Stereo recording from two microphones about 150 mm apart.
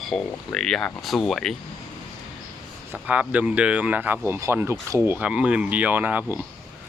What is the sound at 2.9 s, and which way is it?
Speech, 10° right (ahead or behind).